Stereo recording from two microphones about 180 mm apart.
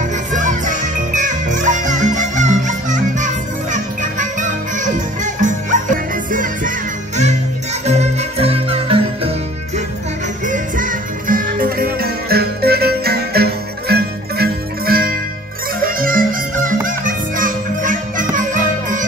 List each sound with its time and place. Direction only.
0.3 s music: 45° right (ahead or behind)
7.8 s music: 40° right (ahead or behind)
10.4 s music: 45° right (ahead or behind)